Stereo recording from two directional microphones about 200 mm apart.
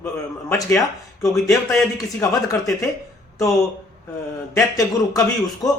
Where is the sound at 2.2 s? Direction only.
15° left (ahead or behind).